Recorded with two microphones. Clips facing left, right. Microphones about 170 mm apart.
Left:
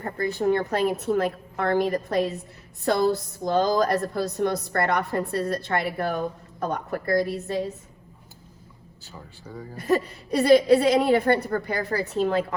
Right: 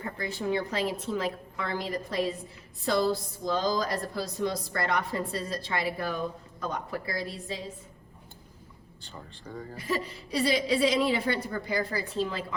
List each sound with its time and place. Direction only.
0.0 s a woman's voice: 55° left (ahead or behind)
9.0 s speech: 5° left (ahead or behind)
9.8 s a woman's voice: 60° left (ahead or behind)